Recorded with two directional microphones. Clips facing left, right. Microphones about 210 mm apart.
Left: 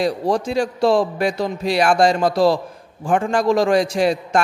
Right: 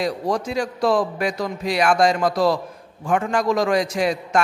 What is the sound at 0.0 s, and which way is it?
A man's voice, 30° left (ahead or behind).